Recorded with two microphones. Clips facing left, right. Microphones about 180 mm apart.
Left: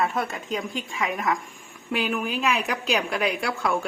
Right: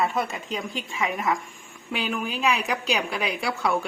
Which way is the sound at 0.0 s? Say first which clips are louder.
Even; centre (ahead or behind).